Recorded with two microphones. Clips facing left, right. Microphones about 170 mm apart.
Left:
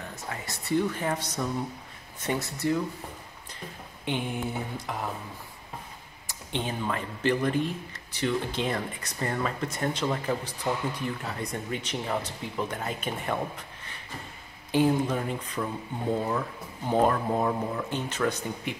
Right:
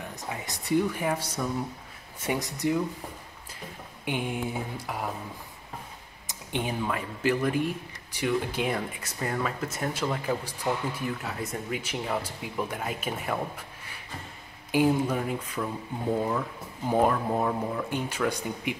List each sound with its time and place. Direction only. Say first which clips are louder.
0.1 s speech: right 1 dB; 15° right (ahead or behind)
4.1 s speech: even; 10° right (ahead or behind)
6.2 s speech: right 1 dB; 10° right (ahead or behind)